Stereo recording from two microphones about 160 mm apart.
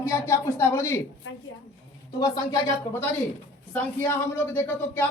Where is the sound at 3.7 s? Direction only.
10° left (ahead or behind).